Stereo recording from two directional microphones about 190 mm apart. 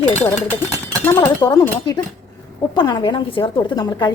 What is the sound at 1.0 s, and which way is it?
A woman's voice, 15° left (ahead or behind).